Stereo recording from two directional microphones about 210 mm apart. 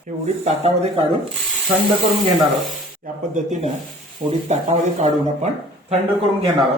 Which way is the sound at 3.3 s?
35° right (ahead or behind).